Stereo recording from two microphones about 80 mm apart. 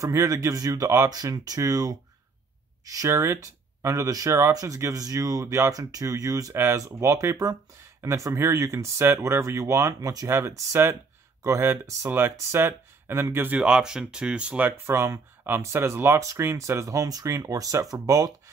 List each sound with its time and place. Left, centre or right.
0.0 s speech: right
0.8 s speech: right
6.5 s speech: right
13.6 s speech: centre
14.9 s speech: right